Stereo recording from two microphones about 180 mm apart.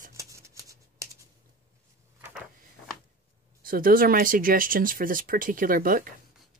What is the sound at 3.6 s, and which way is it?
Speech, 50° right (ahead or behind).